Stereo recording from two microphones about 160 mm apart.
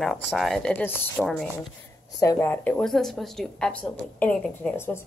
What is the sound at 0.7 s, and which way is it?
Speech, 10° left (ahead or behind).